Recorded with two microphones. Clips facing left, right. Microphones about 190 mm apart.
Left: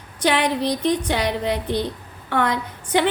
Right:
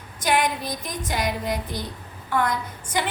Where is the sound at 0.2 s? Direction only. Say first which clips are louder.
Left 3 dB; 70° left (ahead or behind).